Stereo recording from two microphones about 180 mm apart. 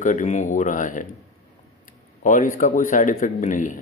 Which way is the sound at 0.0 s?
45° left (ahead or behind).